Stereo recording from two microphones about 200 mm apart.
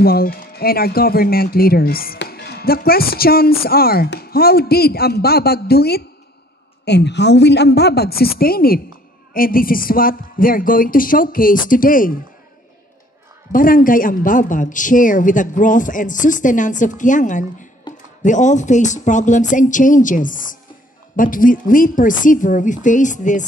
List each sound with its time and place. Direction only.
0.0 s a woman's voice: 50° left (ahead or behind)
13.5 s speech: 45° left (ahead or behind)